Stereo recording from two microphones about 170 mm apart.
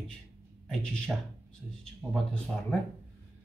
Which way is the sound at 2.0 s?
10° right (ahead or behind).